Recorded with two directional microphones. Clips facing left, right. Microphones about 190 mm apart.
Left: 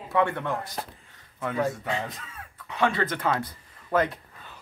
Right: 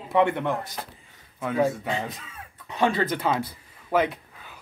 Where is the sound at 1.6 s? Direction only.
20° right (ahead or behind).